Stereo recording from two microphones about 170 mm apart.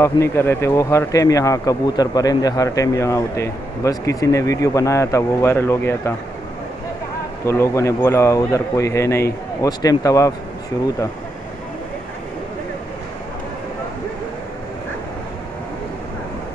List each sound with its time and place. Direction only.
0.0 s speech: 15° left (ahead or behind)
7.4 s speech: 15° left (ahead or behind)